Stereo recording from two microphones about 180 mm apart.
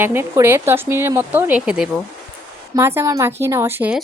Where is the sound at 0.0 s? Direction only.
15° right (ahead or behind).